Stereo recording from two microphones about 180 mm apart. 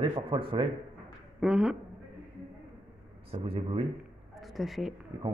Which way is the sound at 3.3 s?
30° right (ahead or behind).